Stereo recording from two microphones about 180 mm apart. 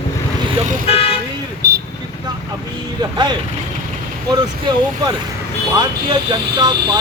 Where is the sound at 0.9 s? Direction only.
35° left (ahead or behind).